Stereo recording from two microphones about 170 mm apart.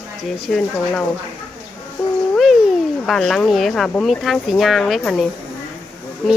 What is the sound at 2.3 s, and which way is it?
Cat, centre (ahead or behind).